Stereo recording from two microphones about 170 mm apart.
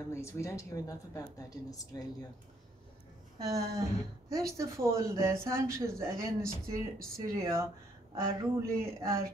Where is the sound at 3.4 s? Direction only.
20° right (ahead or behind).